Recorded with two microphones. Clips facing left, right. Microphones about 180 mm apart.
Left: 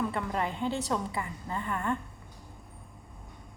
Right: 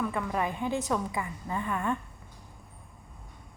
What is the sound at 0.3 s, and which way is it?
A woman's voice, 15° right (ahead or behind).